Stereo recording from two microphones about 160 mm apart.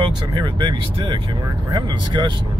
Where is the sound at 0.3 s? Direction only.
30° right (ahead or behind).